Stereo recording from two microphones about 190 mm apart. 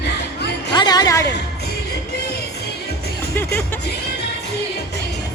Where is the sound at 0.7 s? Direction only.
20° left (ahead or behind).